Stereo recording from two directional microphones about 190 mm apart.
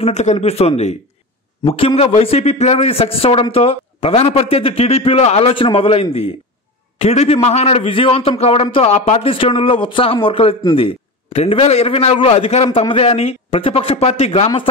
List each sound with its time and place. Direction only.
0.0 s a man's voice: 35° left (ahead or behind)